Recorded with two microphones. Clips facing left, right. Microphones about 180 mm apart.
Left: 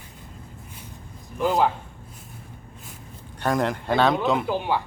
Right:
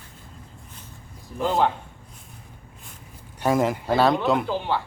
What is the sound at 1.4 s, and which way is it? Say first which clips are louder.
Speech: left 1 dB; centre (ahead or behind).